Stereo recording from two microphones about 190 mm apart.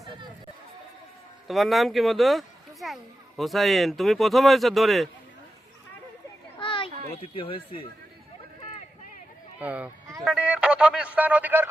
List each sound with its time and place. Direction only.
1.5 s speech: centre (ahead or behind)
6.6 s children playing: 25° left (ahead or behind)
7.1 s speech: 30° left (ahead or behind)
9.6 s speech: 10° right (ahead or behind)